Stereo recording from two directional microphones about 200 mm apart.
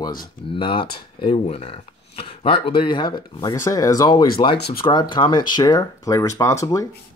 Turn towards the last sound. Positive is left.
turn(degrees=15)  # may be behind; listen again after turning